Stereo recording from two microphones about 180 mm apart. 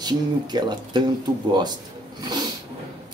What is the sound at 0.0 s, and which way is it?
Speech, 25° right (ahead or behind).